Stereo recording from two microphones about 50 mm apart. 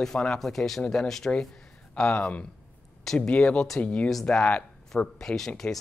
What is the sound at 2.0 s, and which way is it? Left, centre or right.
Speech, left.